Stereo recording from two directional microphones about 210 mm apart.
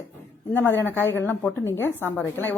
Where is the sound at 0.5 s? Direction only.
10° left (ahead or behind).